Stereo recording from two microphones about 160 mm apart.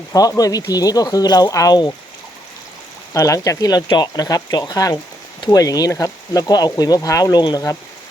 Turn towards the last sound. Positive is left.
turn(degrees=25)  # may be behind; listen again after turning